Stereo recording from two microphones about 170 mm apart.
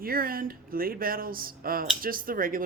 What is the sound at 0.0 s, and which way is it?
Speech, 60° right (ahead or behind).